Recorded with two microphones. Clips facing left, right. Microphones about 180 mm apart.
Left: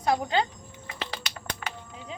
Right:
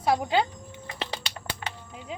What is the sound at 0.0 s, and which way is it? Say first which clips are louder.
Speech: right 1 dB; 5° right (ahead or behind).